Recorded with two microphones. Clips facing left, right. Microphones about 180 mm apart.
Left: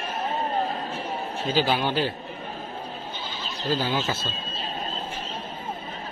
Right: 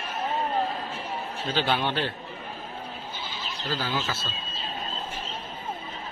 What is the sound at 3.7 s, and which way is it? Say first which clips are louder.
Speech: left 4 dB; 20° left (ahead or behind).